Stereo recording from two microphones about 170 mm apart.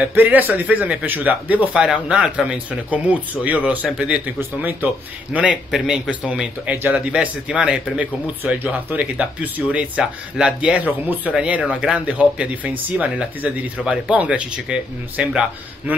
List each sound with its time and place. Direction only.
0.0 s speech: 10° right (ahead or behind)